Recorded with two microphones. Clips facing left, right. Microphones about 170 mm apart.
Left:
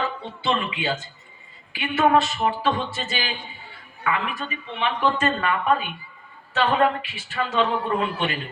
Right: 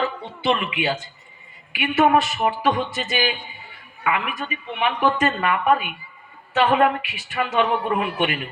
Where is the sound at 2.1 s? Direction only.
25° left (ahead or behind).